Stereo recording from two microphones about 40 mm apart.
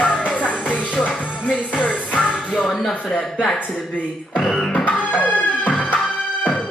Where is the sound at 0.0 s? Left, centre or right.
Left.